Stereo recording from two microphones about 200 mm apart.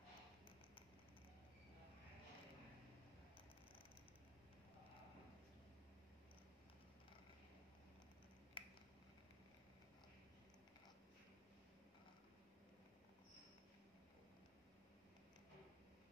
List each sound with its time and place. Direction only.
8.6 s finger snapping: 25° left (ahead or behind)